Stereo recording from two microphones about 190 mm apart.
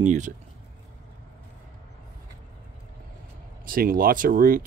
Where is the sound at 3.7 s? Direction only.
50° right (ahead or behind).